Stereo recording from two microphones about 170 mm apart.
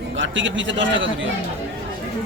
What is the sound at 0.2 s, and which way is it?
Speech, 90° right.